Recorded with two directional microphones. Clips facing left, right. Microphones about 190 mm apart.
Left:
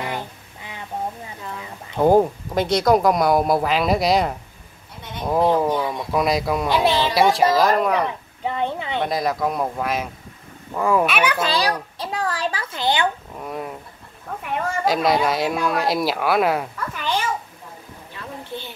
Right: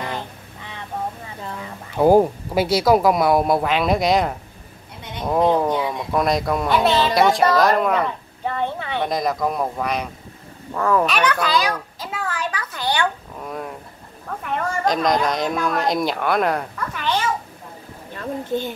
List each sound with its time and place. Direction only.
2.0 s speech: 5° right (ahead or behind)
8.5 s speech: 15° left (ahead or behind)
9.0 s speech: centre (ahead or behind)
11.3 s a sound: 25° left (ahead or behind)
13.4 s speech: 5° left (ahead or behind)
18.1 s a woman's voice: 45° right (ahead or behind)